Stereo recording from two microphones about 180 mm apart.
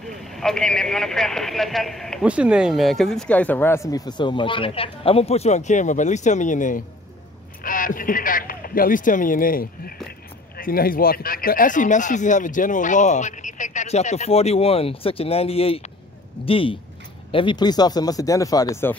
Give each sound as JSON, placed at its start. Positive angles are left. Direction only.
{"t": 0.0, "sound": "speech", "side_deg": 0}